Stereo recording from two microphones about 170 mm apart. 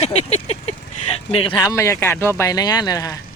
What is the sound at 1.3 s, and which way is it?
Speech, 30° left (ahead or behind).